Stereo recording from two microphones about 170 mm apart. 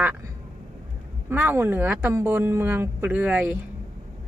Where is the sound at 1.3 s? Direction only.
15° right (ahead or behind).